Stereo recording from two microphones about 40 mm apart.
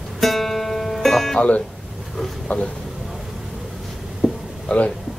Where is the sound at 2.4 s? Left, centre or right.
Left.